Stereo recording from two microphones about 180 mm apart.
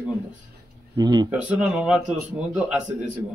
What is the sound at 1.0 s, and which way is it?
Speech, 20° right (ahead or behind).